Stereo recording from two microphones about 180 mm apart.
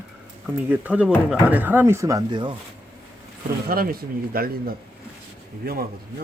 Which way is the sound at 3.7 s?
55° right (ahead or behind).